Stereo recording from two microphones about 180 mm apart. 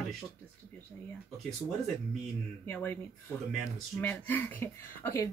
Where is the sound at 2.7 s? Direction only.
10° left (ahead or behind).